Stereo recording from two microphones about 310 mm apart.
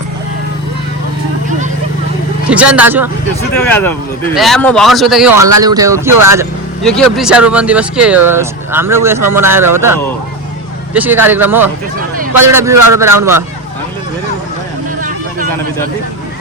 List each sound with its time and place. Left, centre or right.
2.5 s speech: centre
3.5 s speech: centre
5.4 s speech: right
5.6 s speech: centre
6.8 s speech: centre
10.9 s speech: centre
11.9 s a sound: right
12.5 s speech: centre